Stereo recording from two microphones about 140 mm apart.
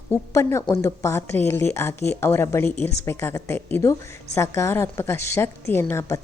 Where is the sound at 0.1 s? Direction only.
20° left (ahead or behind).